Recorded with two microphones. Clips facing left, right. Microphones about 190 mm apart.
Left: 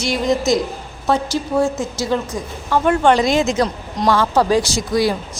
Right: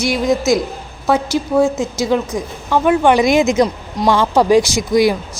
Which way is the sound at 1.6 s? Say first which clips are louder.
Right 4 dB; 10° right (ahead or behind).